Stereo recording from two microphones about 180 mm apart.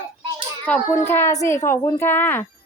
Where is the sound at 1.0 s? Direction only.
10° left (ahead or behind).